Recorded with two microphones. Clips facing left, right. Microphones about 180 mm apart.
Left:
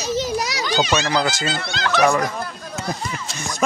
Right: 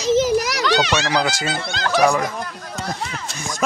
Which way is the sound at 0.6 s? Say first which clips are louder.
Right 1 dB; 75° right (ahead or behind).